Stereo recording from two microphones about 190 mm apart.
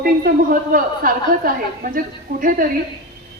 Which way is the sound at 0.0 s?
50° right (ahead or behind).